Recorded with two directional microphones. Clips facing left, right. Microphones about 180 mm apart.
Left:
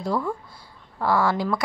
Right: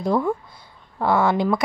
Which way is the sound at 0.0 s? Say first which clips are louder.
Right 5 dB; 20° right (ahead or behind).